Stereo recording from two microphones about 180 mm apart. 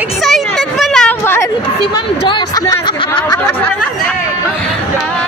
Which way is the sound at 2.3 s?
25° left (ahead or behind).